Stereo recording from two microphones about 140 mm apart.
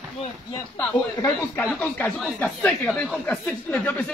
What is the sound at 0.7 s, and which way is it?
A man's voice, 15° left (ahead or behind).